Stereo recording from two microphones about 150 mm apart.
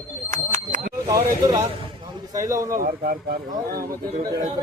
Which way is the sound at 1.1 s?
20° right (ahead or behind).